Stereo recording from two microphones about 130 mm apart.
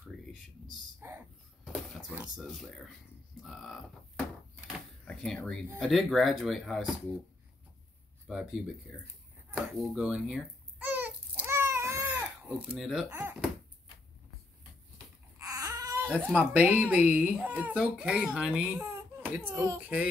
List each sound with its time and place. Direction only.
1.0 s a sound: 15° right (ahead or behind)
2.3 s speech: centre (ahead or behind)
4.6 s a sound: centre (ahead or behind)
5.8 s speech: centre (ahead or behind)
8.3 s speech: 5° right (ahead or behind)
9.5 s babbling: 5° right (ahead or behind); by 12.1 s 20° right (ahead or behind)
12.2 s speech: 10° right (ahead or behind)
13.1 s speech: 15° right (ahead or behind)
15.3 s baby cry: 25° right (ahead or behind)
16.1 s speech: 10° right (ahead or behind)
18.9 s a sound: 15° right (ahead or behind)